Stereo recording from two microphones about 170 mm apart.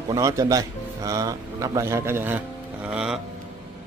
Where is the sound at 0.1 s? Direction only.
20° right (ahead or behind); by 3.2 s 5° right (ahead or behind).